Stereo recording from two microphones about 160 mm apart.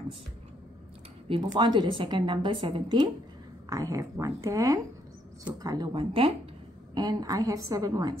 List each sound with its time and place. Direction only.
1.3 s a woman's voice: 30° right (ahead or behind)